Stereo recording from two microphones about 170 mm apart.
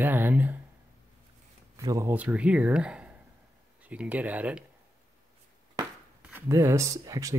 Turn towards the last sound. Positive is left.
turn(degrees=-20)  # may be behind; listen again after turning